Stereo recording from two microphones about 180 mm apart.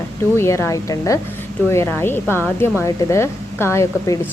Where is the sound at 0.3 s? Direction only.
15° left (ahead or behind).